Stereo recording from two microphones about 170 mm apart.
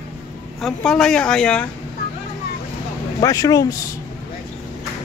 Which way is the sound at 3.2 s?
20° left (ahead or behind).